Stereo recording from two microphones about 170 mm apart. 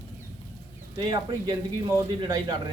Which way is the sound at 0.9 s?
25° right (ahead or behind).